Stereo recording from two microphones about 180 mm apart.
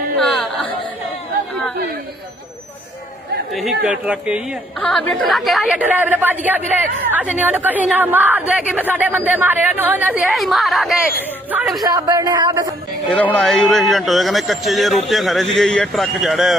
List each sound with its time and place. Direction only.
0.2 s a sound: centre (ahead or behind)
3.5 s a man's voice: centre (ahead or behind)
4.8 s a man's voice: 5° left (ahead or behind)
11.8 s speech: 20° right (ahead or behind)
13.1 s a man's voice: 5° left (ahead or behind)